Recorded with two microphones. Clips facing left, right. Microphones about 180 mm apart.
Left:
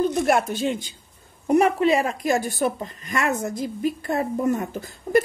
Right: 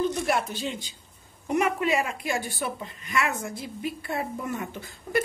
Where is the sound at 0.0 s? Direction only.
50° left (ahead or behind).